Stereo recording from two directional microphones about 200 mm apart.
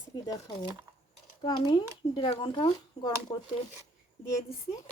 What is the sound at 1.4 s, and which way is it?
Speech, 20° left (ahead or behind).